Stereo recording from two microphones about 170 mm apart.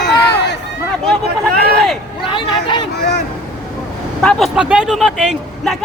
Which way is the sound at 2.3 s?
30° left (ahead or behind).